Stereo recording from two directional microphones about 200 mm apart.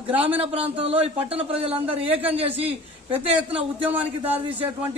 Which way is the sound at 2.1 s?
10° right (ahead or behind).